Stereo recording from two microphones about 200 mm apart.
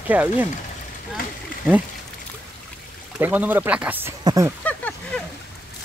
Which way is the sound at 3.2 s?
10° right (ahead or behind).